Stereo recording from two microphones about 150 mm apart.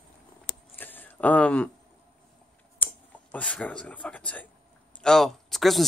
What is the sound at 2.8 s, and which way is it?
A man's voice, 10° left (ahead or behind).